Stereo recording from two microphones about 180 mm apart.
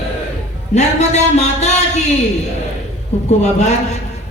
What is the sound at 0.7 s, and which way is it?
Music, 40° left (ahead or behind).